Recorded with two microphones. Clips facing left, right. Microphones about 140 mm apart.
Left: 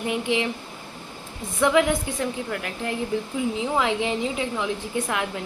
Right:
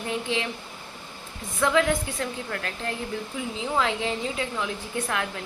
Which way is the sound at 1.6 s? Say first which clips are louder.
Left 3 dB; 15° left (ahead or behind).